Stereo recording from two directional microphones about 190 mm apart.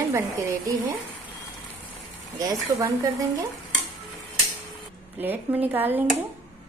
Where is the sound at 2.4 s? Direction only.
15° right (ahead or behind).